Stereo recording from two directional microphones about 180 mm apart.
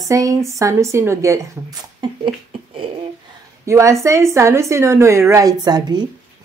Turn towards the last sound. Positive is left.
turn(degrees=-20)  # may be behind; listen again after turning